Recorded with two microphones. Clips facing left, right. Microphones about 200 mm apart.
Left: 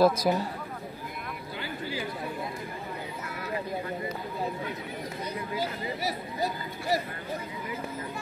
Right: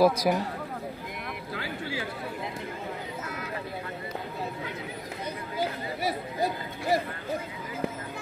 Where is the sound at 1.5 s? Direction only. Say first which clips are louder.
Right 1 dB; 85° right.